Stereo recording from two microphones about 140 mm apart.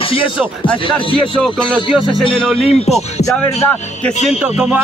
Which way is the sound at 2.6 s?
50° left (ahead or behind).